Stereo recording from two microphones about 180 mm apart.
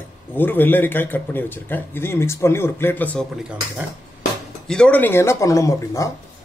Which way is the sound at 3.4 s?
5° right (ahead or behind).